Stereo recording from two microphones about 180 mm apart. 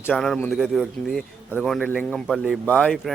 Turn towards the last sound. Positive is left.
turn(degrees=0)  # may be behind; listen again after turning